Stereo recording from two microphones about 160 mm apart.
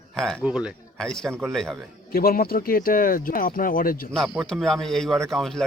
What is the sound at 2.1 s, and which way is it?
Speech, 70° left (ahead or behind).